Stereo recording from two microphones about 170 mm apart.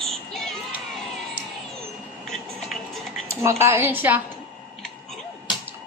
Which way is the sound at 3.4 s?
15° right (ahead or behind).